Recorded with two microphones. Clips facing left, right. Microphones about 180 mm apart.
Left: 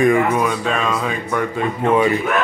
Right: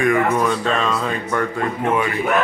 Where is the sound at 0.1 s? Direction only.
10° left (ahead or behind).